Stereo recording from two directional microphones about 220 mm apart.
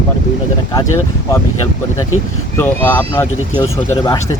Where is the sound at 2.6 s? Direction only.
10° left (ahead or behind).